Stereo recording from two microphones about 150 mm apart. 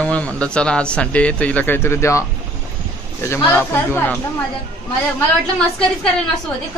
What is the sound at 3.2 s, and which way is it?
Speech, 20° left (ahead or behind).